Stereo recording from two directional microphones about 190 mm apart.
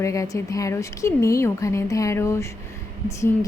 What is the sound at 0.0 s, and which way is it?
A woman's voice, 15° left (ahead or behind).